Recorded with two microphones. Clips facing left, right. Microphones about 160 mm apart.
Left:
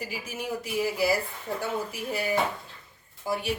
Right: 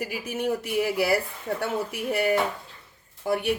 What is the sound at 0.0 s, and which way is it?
A woman's voice, 60° right (ahead or behind).